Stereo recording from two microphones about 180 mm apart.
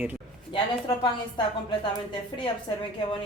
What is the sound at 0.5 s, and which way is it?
Speech, 30° left (ahead or behind).